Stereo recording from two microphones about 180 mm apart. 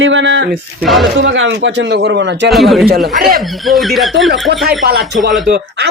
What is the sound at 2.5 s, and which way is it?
Speech, centre (ahead or behind).